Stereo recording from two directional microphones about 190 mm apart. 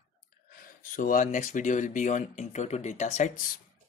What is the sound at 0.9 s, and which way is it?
Speech, 45° left (ahead or behind).